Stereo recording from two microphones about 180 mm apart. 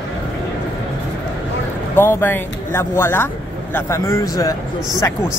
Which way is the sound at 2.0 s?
15° left (ahead or behind).